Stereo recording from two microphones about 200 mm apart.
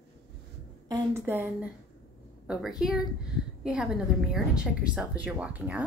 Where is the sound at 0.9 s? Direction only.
15° right (ahead or behind).